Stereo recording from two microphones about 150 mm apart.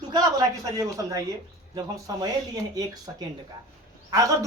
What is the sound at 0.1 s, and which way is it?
A woman's voice, 25° right (ahead or behind).